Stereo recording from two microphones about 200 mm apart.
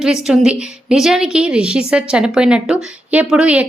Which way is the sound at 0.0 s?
5° right (ahead or behind).